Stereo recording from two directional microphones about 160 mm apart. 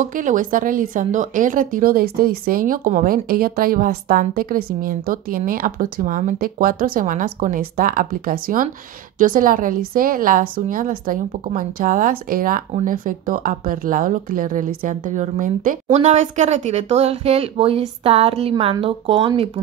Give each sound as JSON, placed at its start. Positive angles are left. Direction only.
{"t": 0.0, "sound": "speech", "side_deg": -55}